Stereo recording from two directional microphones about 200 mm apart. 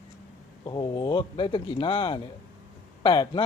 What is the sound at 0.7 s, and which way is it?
Speech, 20° left (ahead or behind).